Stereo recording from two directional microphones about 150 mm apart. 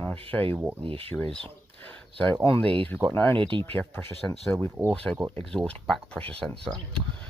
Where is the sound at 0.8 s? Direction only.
40° right (ahead or behind).